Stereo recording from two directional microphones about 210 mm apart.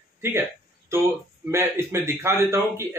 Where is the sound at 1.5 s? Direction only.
10° right (ahead or behind).